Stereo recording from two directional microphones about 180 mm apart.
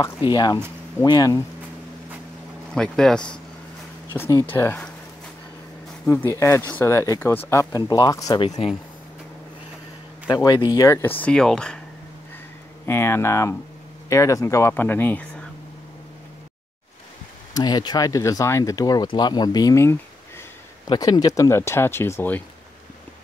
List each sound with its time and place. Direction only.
0.3 s speech: 20° left (ahead or behind)
2.7 s speech: 5° left (ahead or behind)
4.2 s speech: 15° left (ahead or behind)
6.0 s speech: 10° left (ahead or behind)
10.2 s speech: 20° left (ahead or behind); by 11.8 s 5° left (ahead or behind)
12.8 s speech: 15° left (ahead or behind)
17.6 s speech: 25° left (ahead or behind)